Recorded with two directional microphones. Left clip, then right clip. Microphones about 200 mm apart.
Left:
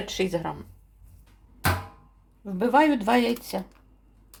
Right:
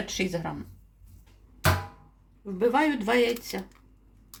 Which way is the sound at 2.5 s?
45° left (ahead or behind).